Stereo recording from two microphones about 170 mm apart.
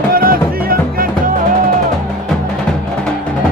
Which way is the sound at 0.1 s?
60° right (ahead or behind).